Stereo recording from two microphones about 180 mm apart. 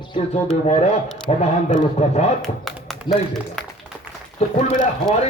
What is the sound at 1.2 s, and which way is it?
A man's voice, 35° left (ahead or behind).